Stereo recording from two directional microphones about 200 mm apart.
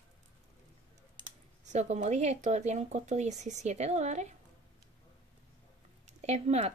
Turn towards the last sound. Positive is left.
turn(degrees=-35)  # may be behind; listen again after turning